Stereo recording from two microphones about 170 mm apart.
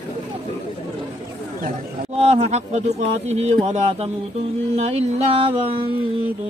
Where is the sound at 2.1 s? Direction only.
35° right (ahead or behind).